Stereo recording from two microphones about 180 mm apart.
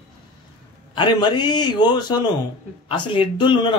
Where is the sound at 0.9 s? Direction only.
25° left (ahead or behind).